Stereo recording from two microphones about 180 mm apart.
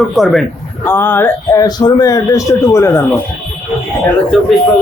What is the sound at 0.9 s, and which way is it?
Speech, 10° left (ahead or behind).